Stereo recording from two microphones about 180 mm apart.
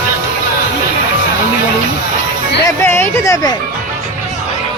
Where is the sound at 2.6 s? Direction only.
15° left (ahead or behind).